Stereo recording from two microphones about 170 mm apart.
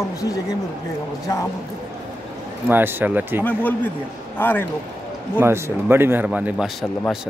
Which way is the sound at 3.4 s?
10° left (ahead or behind).